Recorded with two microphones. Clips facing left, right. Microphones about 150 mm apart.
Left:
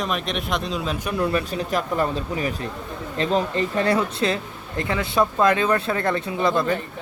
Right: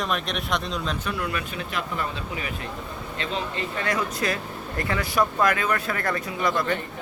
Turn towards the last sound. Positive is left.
turn(degrees=25)  # may be behind; listen again after turning